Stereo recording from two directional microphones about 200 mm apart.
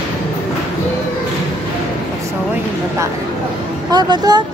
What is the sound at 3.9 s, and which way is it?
Speech, 20° right (ahead or behind).